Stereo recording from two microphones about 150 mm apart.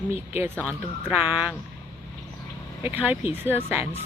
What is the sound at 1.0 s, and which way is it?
Speech, 10° right (ahead or behind).